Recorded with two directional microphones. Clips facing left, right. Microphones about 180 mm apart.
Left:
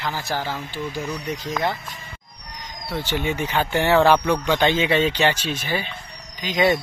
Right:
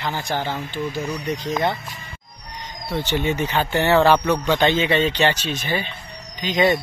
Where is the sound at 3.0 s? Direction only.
10° left (ahead or behind).